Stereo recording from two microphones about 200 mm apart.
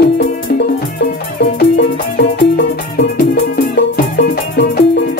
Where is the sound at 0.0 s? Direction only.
55° left (ahead or behind).